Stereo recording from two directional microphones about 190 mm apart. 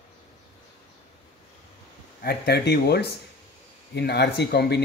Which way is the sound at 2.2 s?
55° left (ahead or behind).